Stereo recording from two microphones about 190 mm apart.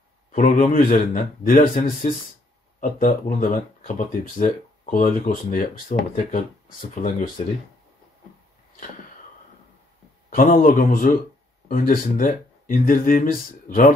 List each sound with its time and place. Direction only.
0.3 s speech: 45° left (ahead or behind)
10.3 s speech: 50° left (ahead or behind)